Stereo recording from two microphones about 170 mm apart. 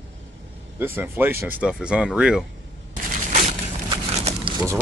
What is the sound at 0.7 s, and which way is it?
Speech, 10° right (ahead or behind).